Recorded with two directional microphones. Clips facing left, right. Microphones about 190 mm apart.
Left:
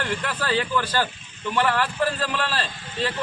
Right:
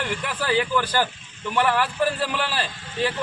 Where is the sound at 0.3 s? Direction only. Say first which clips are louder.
Right 4 dB; 15° right (ahead or behind).